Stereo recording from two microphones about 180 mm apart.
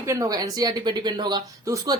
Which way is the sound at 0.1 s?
20° right (ahead or behind).